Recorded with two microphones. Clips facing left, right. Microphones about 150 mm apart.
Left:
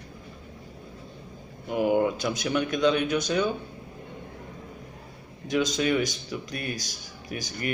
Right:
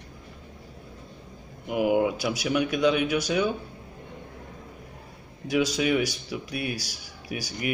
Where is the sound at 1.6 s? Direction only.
10° right (ahead or behind).